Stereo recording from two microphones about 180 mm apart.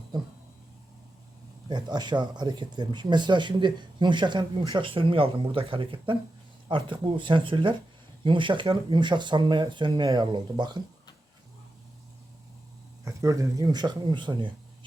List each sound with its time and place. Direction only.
1.6 s speech: 25° right (ahead or behind)
13.1 s speech: 20° right (ahead or behind)